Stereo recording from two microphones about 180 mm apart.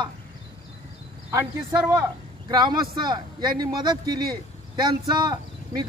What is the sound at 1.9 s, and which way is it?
Speech, 20° right (ahead or behind).